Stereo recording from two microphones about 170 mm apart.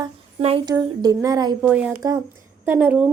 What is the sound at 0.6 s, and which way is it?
Speech, 25° right (ahead or behind).